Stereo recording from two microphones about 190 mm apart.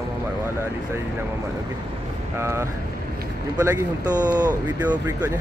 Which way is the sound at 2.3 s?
15° right (ahead or behind).